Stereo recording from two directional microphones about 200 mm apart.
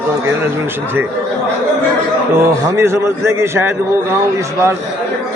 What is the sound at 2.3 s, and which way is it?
A man's voice, 15° right (ahead or behind).